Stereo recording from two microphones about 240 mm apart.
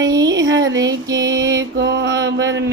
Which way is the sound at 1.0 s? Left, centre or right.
Centre.